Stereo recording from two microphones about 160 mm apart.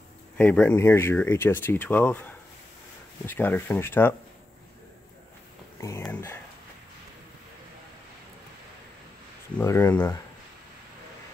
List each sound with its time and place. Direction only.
0.4 s speech: 10° left (ahead or behind)
3.3 s speech: 15° left (ahead or behind)
5.8 s speech: 15° left (ahead or behind)
9.6 s speech: 10° left (ahead or behind)